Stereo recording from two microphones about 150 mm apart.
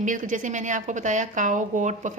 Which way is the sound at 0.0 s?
55° right (ahead or behind).